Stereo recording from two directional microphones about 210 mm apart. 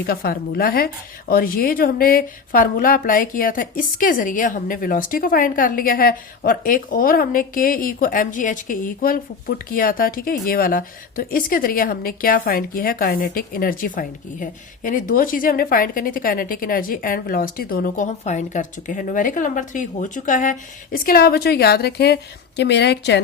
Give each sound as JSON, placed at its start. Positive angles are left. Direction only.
{"t": 0.0, "sound": "a woman's voice", "side_deg": 45}